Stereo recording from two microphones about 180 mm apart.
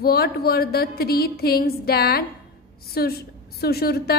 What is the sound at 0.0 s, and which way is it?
A woman's voice, 60° left (ahead or behind).